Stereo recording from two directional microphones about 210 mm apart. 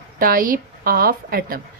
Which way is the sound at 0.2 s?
45° right (ahead or behind).